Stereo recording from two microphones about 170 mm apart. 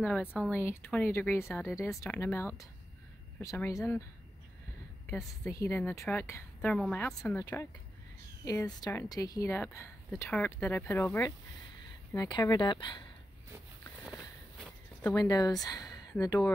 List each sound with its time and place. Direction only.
0.0 s a woman's voice: 5° left (ahead or behind)
5.1 s a woman's voice: 15° left (ahead or behind)
7.2 s a woman's voice: 20° left (ahead or behind)
14.0 s walk: 5° right (ahead or behind)
15.0 s a woman's voice: 20° left (ahead or behind)